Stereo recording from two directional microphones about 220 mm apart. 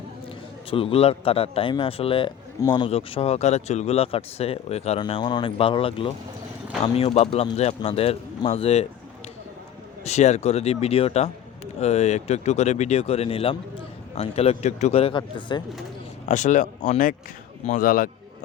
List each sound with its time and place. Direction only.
0.7 s speech: 25° left (ahead or behind)
10.0 s speech: 30° left (ahead or behind)
16.3 s speech: 35° left (ahead or behind)